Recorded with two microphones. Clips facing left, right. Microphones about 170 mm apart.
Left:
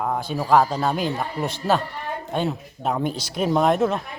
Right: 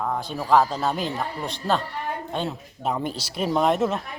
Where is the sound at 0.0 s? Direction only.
5° left (ahead or behind).